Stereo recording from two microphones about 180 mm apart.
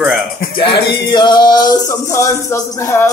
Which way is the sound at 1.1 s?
25° left (ahead or behind).